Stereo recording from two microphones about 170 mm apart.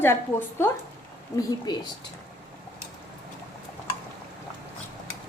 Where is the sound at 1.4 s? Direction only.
20° left (ahead or behind).